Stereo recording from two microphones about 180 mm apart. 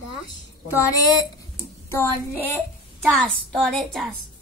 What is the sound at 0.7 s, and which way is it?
A woman's voice, 15° left (ahead or behind).